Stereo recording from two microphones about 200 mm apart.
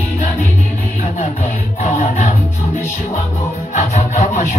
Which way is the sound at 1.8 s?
40° left (ahead or behind).